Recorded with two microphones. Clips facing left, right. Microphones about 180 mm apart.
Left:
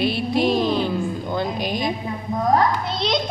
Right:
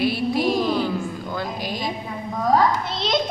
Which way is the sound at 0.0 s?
25° left (ahead or behind).